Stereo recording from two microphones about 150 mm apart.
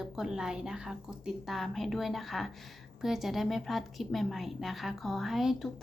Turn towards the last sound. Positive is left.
turn(degrees=0)  # may be behind; listen again after turning